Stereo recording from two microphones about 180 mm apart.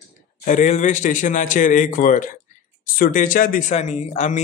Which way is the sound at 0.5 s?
45° left (ahead or behind).